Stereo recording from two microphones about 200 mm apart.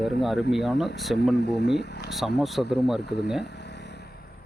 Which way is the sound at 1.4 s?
60° left (ahead or behind).